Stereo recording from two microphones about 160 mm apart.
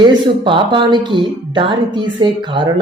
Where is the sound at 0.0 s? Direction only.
30° right (ahead or behind).